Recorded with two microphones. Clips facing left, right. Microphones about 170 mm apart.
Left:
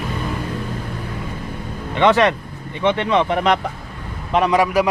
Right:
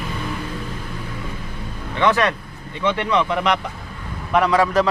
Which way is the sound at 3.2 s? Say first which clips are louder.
Left 3 dB; 45° left (ahead or behind).